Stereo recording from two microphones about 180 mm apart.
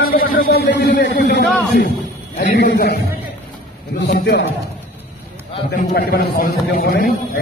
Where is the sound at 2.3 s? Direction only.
45° left (ahead or behind).